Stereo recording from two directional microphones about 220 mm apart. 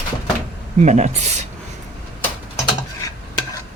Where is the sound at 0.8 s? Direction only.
30° right (ahead or behind).